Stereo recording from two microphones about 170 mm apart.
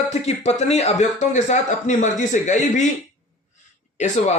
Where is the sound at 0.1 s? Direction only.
40° left (ahead or behind).